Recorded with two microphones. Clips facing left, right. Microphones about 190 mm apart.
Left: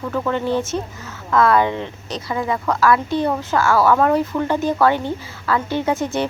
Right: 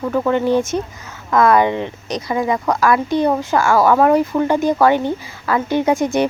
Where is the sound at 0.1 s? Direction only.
15° right (ahead or behind).